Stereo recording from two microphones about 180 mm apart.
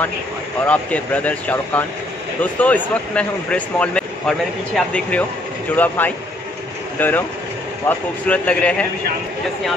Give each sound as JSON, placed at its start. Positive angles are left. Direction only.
{"t": 0.7, "sound": "speech", "side_deg": 10}